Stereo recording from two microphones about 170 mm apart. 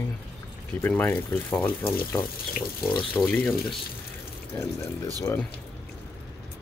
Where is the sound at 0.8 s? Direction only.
10° left (ahead or behind).